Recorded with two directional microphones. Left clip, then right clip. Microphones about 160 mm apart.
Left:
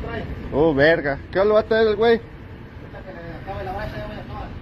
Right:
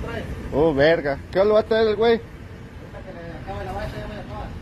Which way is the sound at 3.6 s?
30° left (ahead or behind).